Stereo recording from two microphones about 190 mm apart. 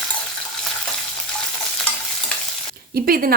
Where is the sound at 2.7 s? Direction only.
50° right (ahead or behind).